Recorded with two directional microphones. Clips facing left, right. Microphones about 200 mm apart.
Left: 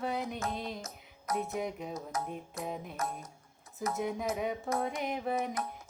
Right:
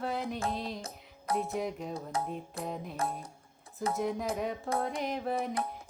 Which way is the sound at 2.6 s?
Centre (ahead or behind).